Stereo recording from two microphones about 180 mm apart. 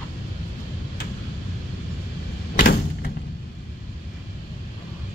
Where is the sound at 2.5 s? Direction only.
50° left (ahead or behind).